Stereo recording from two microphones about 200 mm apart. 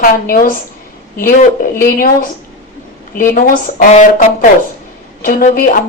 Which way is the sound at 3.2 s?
45° left (ahead or behind).